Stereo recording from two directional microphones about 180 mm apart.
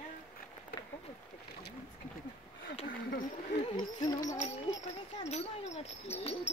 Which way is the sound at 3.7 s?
25° left (ahead or behind).